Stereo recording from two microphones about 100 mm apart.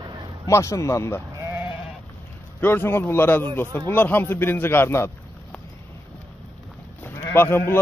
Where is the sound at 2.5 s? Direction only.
20° left (ahead or behind).